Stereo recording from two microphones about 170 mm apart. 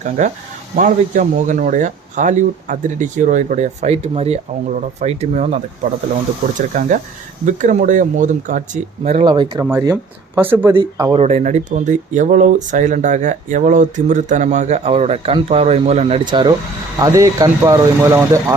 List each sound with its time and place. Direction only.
0.8 s speech: 50° right (ahead or behind)
6.6 s speech: 50° right (ahead or behind)
9.2 s speech: 25° right (ahead or behind)
9.6 s speech: 15° right (ahead or behind)
10.8 s speech: 25° right (ahead or behind)
11.2 s speech: 40° right (ahead or behind); by 18.5 s 15° right (ahead or behind)